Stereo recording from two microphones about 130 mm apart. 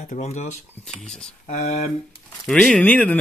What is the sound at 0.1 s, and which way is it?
Speech, 65° left (ahead or behind).